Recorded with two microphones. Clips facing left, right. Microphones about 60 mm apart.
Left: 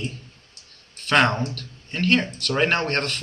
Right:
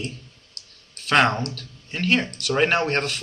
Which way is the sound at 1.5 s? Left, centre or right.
Centre.